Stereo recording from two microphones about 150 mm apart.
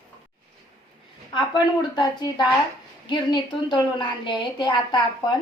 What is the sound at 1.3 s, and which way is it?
A woman's voice, 30° left (ahead or behind).